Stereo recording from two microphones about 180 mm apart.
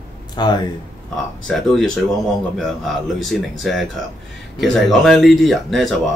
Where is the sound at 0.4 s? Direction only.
25° left (ahead or behind).